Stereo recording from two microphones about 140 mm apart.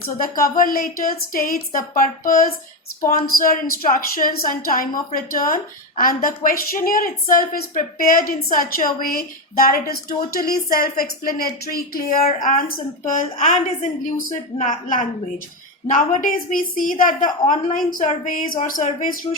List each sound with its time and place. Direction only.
0.2 s a woman's voice: 80° left
12.3 s a woman's voice: 70° left (ahead or behind)
17.9 s a woman's voice: 80° left
18.6 s speech: 65° left (ahead or behind)